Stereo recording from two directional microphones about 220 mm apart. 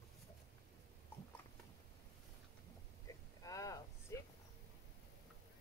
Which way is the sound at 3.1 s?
15° left (ahead or behind).